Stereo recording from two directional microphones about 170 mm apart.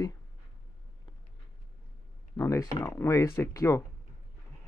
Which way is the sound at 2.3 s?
20° left (ahead or behind).